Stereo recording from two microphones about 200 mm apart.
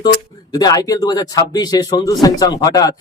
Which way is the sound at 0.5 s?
20° left (ahead or behind).